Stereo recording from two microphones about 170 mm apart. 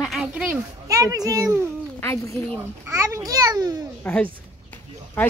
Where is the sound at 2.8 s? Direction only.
15° right (ahead or behind).